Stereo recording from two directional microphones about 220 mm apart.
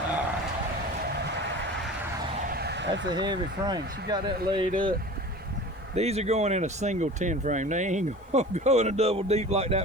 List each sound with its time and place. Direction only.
2.5 s vehicle: 45° right (ahead or behind)
3.2 s speech: 20° right (ahead or behind)